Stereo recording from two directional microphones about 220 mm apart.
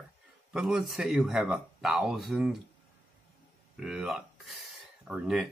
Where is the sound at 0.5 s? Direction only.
Centre (ahead or behind).